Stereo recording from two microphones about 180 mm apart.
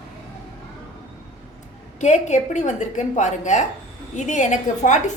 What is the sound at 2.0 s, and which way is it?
A woman's voice, 40° left (ahead or behind).